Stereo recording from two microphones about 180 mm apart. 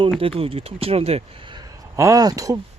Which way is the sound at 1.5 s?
20° right (ahead or behind).